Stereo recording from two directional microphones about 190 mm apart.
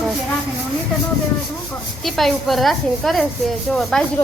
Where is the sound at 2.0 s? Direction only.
Centre (ahead or behind).